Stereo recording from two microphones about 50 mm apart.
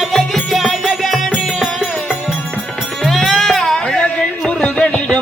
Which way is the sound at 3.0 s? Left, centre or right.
Centre.